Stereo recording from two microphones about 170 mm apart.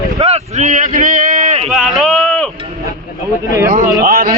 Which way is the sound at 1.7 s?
Centre (ahead or behind).